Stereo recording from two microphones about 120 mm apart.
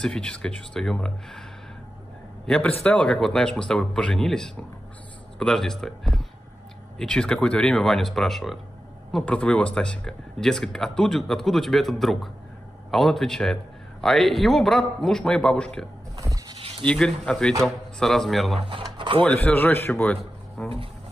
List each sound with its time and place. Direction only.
0.0 s speech: 5° left (ahead or behind)
2.4 s a man's voice: 5° left (ahead or behind)
16.2 s a sound: 30° right (ahead or behind)
16.8 s speech: 10° left (ahead or behind)
18.6 s speech: 45° right (ahead or behind)
19.2 s a man's voice: 10° left (ahead or behind)